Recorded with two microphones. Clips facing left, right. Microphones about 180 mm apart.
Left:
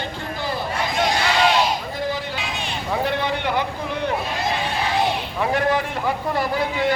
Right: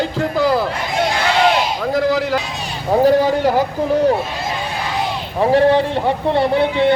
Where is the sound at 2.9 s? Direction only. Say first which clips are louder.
Right 11 dB; 40° right (ahead or behind).